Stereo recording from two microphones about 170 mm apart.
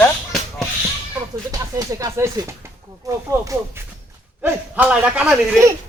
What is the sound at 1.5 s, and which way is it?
Speech, 20° right (ahead or behind).